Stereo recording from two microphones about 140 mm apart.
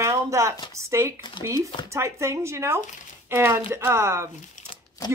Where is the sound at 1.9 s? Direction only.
20° right (ahead or behind).